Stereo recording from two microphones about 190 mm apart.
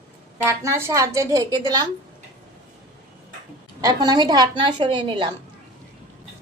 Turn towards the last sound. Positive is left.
turn(degrees=-25)  # may be behind; listen again after turning